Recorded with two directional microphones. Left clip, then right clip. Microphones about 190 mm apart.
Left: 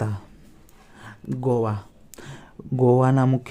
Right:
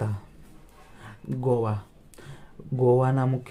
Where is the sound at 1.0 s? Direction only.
30° left (ahead or behind).